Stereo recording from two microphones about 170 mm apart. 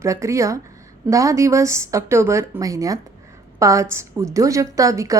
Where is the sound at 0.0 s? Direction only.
15° right (ahead or behind).